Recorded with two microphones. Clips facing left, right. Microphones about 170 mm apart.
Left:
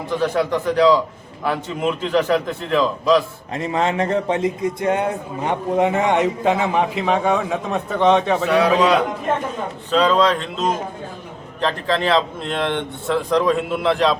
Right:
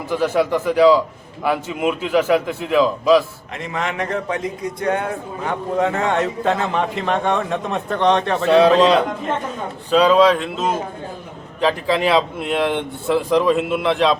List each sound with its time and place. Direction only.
0.1 s speech: 5° right (ahead or behind)
3.5 s a man's voice: 30° left (ahead or behind); by 8.4 s 5° left (ahead or behind)
8.4 s a man's voice: 25° right (ahead or behind)
9.9 s speech: 10° right (ahead or behind)